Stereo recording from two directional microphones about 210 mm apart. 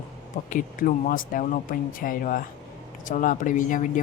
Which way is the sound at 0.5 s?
40° left (ahead or behind).